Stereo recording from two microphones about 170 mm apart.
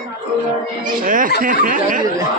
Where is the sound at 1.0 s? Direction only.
55° right (ahead or behind).